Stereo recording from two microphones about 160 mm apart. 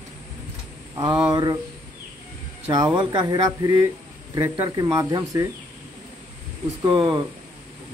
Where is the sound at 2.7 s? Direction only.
25° right (ahead or behind).